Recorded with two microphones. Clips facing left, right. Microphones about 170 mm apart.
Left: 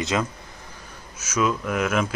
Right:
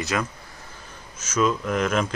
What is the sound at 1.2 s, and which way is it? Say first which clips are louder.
Speech: right 1 dB; 10° left (ahead or behind).